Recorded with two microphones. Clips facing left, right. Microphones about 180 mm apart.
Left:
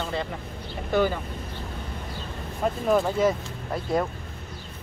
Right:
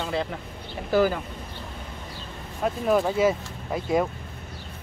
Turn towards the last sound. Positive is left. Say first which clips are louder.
# right 2 dB
turn(degrees=-5)  # may be behind; listen again after turning